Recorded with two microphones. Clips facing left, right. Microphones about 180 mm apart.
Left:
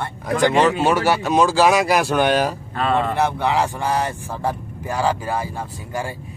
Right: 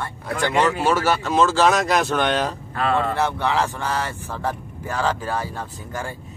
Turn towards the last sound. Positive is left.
turn(degrees=10)  # may be behind; listen again after turning